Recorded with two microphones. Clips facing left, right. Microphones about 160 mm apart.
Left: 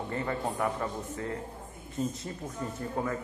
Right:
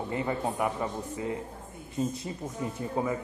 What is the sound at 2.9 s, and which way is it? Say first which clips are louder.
Speech: right 3 dB; 10° right (ahead or behind).